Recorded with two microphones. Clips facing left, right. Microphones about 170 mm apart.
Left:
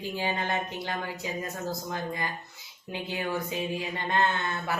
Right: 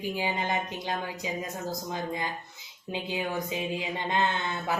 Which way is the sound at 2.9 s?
15° right (ahead or behind).